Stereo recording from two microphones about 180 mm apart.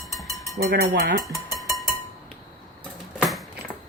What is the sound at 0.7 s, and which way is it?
Speech, 60° right (ahead or behind).